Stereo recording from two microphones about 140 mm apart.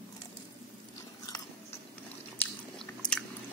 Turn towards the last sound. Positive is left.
turn(degrees=5)  # may be behind; listen again after turning